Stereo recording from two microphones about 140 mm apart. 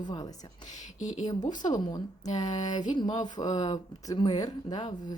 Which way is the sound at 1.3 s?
30° left (ahead or behind).